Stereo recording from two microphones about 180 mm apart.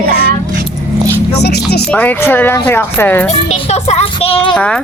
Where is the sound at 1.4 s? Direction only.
65° left (ahead or behind).